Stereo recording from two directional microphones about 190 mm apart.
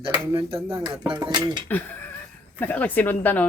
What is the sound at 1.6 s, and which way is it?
Speech, 10° left (ahead or behind).